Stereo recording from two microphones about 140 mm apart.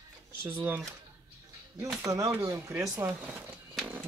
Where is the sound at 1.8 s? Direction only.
25° right (ahead or behind).